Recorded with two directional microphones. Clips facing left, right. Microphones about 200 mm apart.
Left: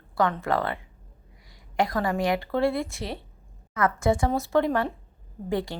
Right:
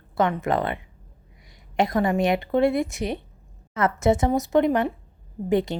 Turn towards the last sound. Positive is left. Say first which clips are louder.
# right 6 dB
turn(degrees=-20)  # may be behind; listen again after turning